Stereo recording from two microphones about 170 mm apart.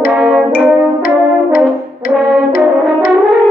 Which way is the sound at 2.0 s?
55° left (ahead or behind).